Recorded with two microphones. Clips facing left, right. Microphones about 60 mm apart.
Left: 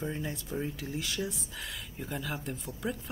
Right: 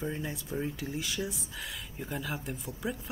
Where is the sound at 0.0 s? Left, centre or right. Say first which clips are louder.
Even; centre.